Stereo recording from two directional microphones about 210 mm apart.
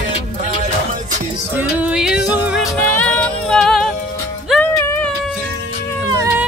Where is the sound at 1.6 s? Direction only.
5° right (ahead or behind).